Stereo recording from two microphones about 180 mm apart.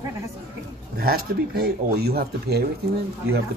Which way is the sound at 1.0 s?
60° right (ahead or behind).